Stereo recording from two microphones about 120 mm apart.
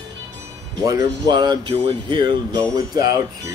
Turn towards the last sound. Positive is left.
turn(degrees=-35)  # may be behind; listen again after turning